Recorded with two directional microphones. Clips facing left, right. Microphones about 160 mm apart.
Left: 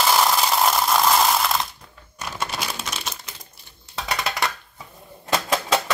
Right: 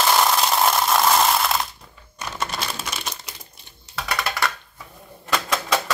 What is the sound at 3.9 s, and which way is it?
Music, 20° left (ahead or behind).